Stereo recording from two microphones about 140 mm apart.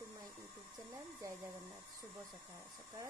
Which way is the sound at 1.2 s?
25° right (ahead or behind).